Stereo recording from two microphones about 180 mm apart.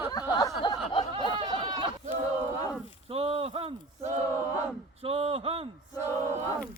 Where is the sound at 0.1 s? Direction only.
20° left (ahead or behind).